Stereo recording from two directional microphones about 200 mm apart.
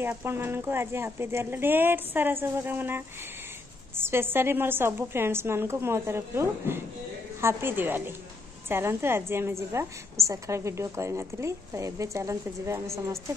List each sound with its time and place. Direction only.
0.0 s a woman's voice: 10° right (ahead or behind)